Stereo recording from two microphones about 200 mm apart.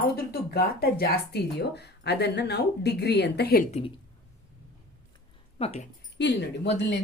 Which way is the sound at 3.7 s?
30° left (ahead or behind).